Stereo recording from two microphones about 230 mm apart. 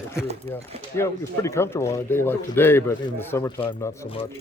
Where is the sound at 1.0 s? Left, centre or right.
Centre.